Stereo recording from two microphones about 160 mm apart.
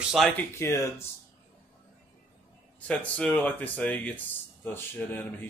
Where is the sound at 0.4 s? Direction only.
15° left (ahead or behind).